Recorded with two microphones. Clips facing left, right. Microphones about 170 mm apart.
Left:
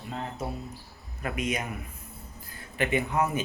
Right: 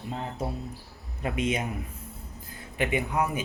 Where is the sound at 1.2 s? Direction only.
25° right (ahead or behind).